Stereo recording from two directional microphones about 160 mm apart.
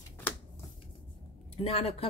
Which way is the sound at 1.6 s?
40° left (ahead or behind).